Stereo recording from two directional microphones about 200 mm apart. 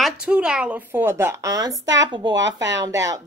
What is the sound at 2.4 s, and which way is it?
Speech, 65° right (ahead or behind).